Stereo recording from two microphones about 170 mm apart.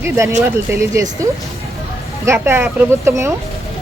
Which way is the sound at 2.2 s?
15° right (ahead or behind).